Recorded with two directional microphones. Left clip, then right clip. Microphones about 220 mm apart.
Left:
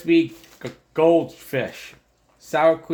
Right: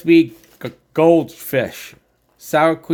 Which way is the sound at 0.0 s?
55° right (ahead or behind).